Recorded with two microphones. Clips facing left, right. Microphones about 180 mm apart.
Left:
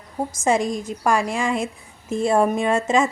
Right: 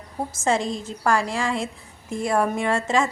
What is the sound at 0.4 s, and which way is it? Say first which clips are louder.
A woman's voice: left 3 dB; 15° left (ahead or behind).